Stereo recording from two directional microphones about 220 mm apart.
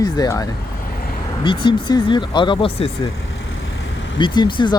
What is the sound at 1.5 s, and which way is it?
Speech, 20° left (ahead or behind).